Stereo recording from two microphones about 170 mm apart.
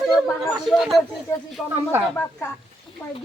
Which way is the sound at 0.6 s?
Centre (ahead or behind).